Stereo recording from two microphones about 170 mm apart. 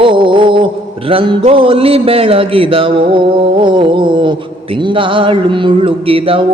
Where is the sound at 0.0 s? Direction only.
30° right (ahead or behind).